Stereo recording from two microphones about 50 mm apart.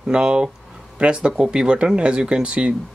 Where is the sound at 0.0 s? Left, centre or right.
Centre.